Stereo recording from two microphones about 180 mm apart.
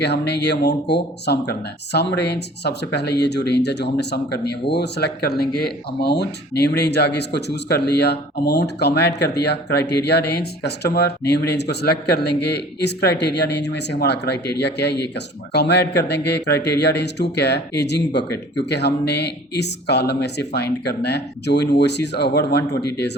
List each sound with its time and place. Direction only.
0.0 s speech: 65° left (ahead or behind)